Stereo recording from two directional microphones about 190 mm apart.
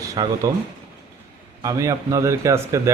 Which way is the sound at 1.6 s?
15° right (ahead or behind).